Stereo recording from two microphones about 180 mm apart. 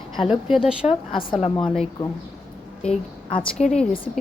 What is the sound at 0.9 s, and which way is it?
Speech, 30° left (ahead or behind).